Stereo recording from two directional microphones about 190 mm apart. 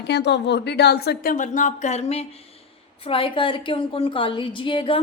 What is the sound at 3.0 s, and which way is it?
A woman's voice, 30° left (ahead or behind).